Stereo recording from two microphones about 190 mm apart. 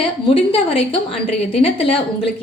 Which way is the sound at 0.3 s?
30° left (ahead or behind).